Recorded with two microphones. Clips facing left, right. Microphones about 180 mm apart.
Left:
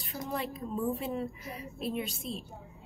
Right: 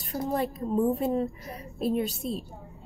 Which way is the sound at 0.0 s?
40° right (ahead or behind).